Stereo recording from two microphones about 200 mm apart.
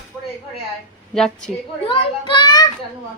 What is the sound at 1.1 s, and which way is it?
Speech, 5° left (ahead or behind).